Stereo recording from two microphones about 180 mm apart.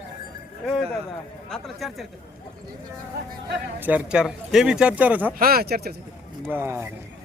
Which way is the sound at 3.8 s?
10° right (ahead or behind).